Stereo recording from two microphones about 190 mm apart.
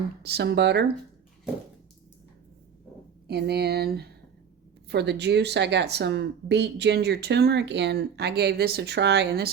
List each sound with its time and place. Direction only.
0.2 s speech: 55° right (ahead or behind)
3.2 s speech: 55° right (ahead or behind)